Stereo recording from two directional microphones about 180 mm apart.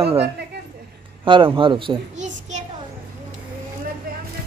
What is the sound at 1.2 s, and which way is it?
Speech, 30° right (ahead or behind).